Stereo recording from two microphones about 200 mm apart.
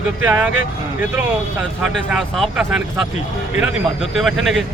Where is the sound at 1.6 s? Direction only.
Centre (ahead or behind).